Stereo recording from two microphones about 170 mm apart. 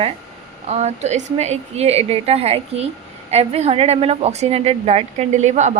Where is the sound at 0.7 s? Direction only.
40° right (ahead or behind).